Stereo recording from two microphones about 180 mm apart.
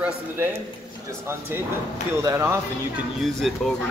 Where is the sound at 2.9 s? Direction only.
Centre (ahead or behind).